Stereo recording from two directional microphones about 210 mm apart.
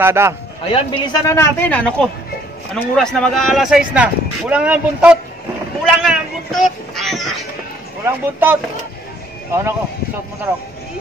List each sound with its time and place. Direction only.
0.0 s speech: 10° right (ahead or behind)
0.7 s a man's voice: 25° left (ahead or behind)
1.2 s speech: 15° left (ahead or behind)
8.0 s speech: 10° right (ahead or behind)